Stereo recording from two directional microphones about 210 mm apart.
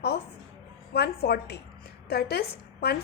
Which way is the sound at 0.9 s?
50° left (ahead or behind).